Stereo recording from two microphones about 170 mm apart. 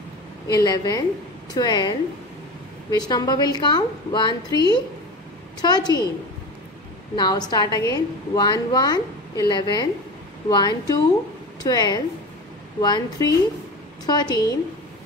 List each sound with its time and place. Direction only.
0.5 s a woman's voice: 20° left (ahead or behind)
7.2 s a woman's voice: 25° left (ahead or behind)